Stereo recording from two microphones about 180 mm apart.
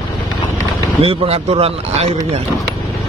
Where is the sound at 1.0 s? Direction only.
35° right (ahead or behind).